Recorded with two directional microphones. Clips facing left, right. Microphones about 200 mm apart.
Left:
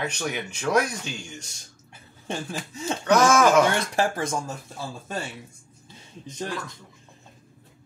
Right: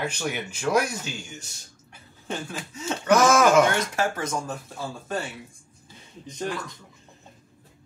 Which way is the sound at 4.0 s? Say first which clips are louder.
Left 2 dB; 30° left (ahead or behind).